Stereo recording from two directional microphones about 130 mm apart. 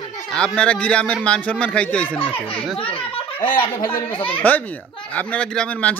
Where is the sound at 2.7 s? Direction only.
45° left (ahead or behind).